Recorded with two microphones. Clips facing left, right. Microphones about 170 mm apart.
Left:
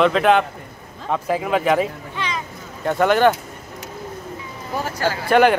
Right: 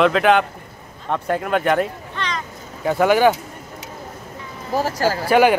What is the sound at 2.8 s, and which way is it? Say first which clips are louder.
Speech: right 1 dB; 5° right (ahead or behind).